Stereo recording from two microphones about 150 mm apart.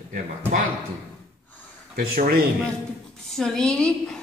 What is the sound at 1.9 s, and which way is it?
Speech, 75° right (ahead or behind).